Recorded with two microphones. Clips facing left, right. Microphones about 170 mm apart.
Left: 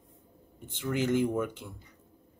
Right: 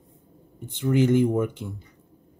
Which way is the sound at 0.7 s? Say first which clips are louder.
Right 8 dB; 25° right (ahead or behind).